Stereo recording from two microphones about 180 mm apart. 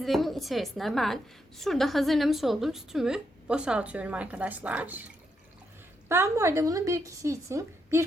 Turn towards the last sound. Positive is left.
turn(degrees=-15)  # may be behind; listen again after turning